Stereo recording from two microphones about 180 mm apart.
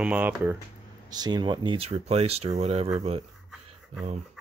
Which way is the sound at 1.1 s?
25° right (ahead or behind).